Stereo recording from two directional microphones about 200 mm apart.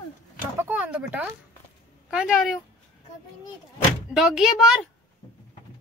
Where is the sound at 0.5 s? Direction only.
10° right (ahead or behind).